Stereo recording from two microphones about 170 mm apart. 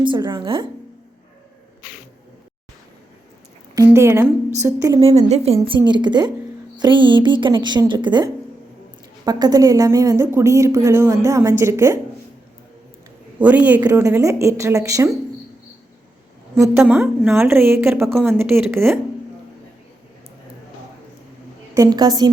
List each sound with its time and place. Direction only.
0.0 s speech: 30° right (ahead or behind)
3.8 s speech: 15° right (ahead or behind)
5.0 s a woman's voice: 40° right (ahead or behind); by 11.9 s 15° right (ahead or behind)
13.4 s speech: 10° right (ahead or behind)
16.6 s speech: 10° right (ahead or behind)
17.8 s speech: centre (ahead or behind)
18.1 s speech: 15° right (ahead or behind)
21.8 s speech: 20° right (ahead or behind)